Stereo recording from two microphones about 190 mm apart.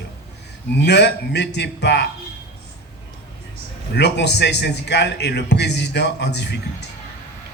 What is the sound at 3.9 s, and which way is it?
Speech, 60° left (ahead or behind).